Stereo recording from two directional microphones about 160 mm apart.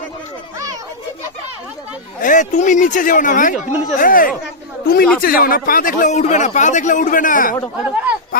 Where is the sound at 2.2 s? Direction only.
50° left (ahead or behind).